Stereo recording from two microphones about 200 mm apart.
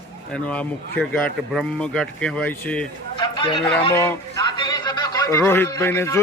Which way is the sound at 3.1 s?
25° left (ahead or behind).